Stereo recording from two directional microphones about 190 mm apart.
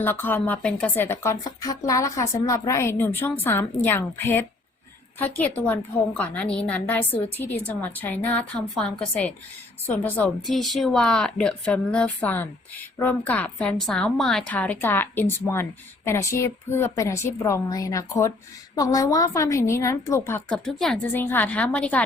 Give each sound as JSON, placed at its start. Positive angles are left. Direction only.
{"t": 0.0, "sound": "a woman's voice", "side_deg": 10}